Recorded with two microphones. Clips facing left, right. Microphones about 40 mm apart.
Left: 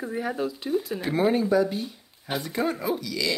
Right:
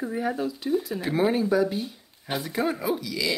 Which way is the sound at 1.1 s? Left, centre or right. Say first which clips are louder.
Even; centre.